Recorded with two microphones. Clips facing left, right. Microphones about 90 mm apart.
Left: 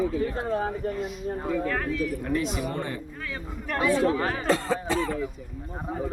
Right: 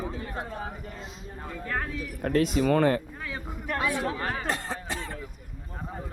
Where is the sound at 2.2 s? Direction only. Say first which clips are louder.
Right 6 dB; 65° right (ahead or behind).